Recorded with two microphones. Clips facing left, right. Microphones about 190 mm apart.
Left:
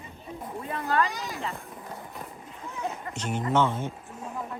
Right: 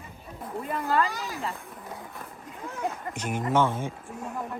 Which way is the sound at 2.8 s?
10° right (ahead or behind).